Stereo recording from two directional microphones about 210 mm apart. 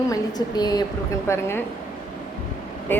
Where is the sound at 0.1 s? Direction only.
20° left (ahead or behind).